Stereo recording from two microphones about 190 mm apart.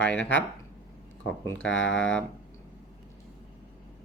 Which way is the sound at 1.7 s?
75° left (ahead or behind).